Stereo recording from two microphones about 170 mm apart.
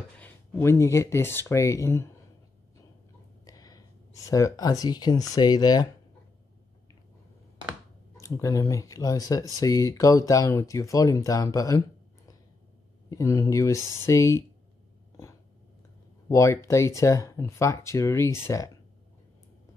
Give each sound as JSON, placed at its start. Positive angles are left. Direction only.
{"t": 0.2, "sound": "speech", "side_deg": 10}
{"t": 3.4, "sound": "a sound", "side_deg": 20}
{"t": 5.3, "sound": "speech", "side_deg": 25}
{"t": 8.2, "sound": "speech", "side_deg": 20}
{"t": 13.1, "sound": "speech", "side_deg": 20}
{"t": 16.3, "sound": "speech", "side_deg": 15}